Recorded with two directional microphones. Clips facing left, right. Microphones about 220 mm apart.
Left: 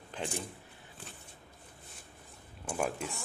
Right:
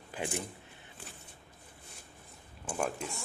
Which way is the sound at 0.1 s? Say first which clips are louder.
Right 1 dB; 10° right (ahead or behind).